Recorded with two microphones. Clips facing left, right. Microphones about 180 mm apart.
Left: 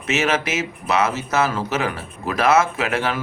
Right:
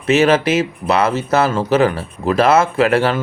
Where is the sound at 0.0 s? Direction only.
30° right (ahead or behind).